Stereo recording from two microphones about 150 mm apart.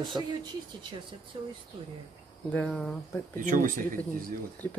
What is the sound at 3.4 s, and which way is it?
Speech, 60° right (ahead or behind).